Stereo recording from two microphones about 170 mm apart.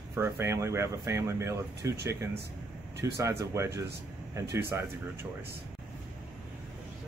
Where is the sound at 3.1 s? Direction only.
15° right (ahead or behind).